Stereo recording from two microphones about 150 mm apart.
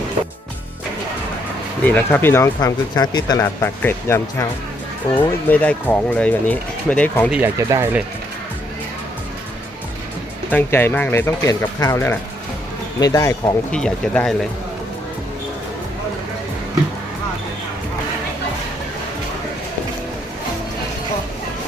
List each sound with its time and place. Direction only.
1.8 s speech: 10° left (ahead or behind)
2.6 s speech: 25° left (ahead or behind)
3.6 s speech: 15° left (ahead or behind)
7.3 s speech: 10° right (ahead or behind)
10.5 s speech: 15° left (ahead or behind)
13.7 s speech: 5° left (ahead or behind)